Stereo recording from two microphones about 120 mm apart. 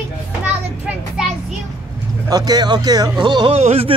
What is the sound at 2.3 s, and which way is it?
Speech, 35° right (ahead or behind).